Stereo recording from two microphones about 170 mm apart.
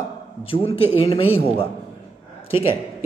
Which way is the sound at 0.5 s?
35° left (ahead or behind).